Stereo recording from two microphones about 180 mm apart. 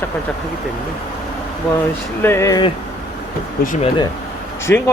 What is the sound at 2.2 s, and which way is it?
Speech, 15° left (ahead or behind).